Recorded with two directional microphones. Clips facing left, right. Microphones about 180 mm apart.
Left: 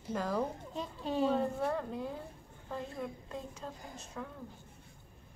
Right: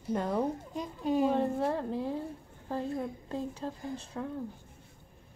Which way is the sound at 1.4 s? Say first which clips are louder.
Right 4 dB; 30° right (ahead or behind).